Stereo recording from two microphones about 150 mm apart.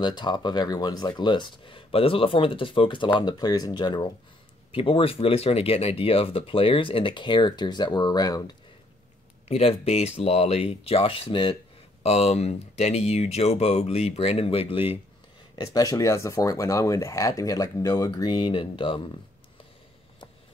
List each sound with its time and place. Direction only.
0.0 s speech: 30° left (ahead or behind)
9.5 s speech: 40° left (ahead or behind)
15.5 s speech: 25° left (ahead or behind)